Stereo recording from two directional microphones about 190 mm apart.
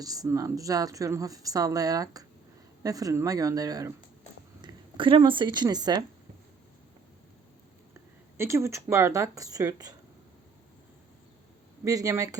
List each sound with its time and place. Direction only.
0.0 s a woman's voice: 20° right (ahead or behind)
8.4 s speech: 15° right (ahead or behind)
11.9 s speech: 15° right (ahead or behind)